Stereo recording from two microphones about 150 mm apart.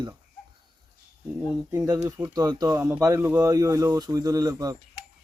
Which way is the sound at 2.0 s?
25° right (ahead or behind).